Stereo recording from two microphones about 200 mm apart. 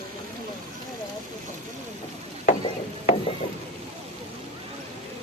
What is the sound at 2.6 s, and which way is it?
Ratchet, 25° left (ahead or behind).